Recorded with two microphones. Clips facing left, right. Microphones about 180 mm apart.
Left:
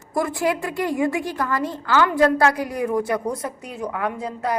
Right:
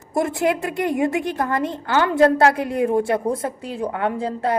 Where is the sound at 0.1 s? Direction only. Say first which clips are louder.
Right 2 dB; 25° right (ahead or behind).